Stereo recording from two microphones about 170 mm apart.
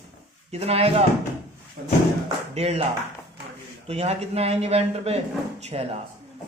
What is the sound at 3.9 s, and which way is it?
Speech, 40° right (ahead or behind).